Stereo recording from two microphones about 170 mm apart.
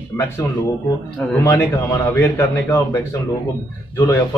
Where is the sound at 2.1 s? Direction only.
15° left (ahead or behind).